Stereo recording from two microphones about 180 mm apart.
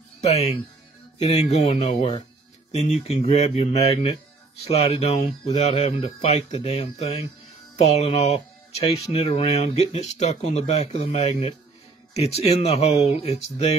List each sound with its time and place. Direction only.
0.2 s speech: 35° left (ahead or behind)